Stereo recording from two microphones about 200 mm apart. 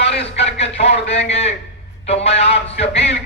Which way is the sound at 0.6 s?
30° left (ahead or behind).